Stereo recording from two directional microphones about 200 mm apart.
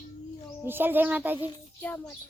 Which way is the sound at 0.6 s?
10° right (ahead or behind).